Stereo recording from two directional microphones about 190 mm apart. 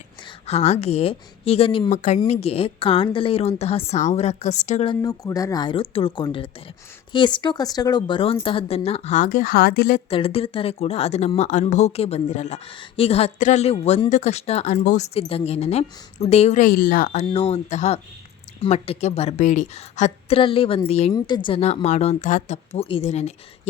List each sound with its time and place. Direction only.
0.3 s a woman's voice: 35° left (ahead or behind)
4.9 s a woman's voice: 20° left (ahead or behind); by 10.0 s 50° left (ahead or behind)
10.1 s a woman's voice: 30° left (ahead or behind)